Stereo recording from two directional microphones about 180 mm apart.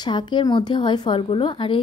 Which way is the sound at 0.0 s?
25° left (ahead or behind).